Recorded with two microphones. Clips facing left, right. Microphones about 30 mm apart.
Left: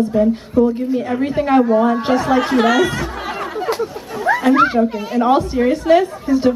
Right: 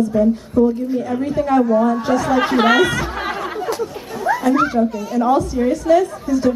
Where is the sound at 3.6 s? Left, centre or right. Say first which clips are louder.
Left 2 dB; left.